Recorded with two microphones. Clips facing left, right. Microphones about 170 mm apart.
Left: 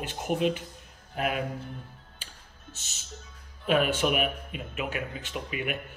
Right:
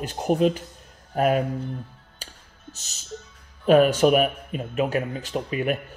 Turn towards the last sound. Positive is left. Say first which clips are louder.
# right 8 dB
turn(degrees=-40)  # may be behind; listen again after turning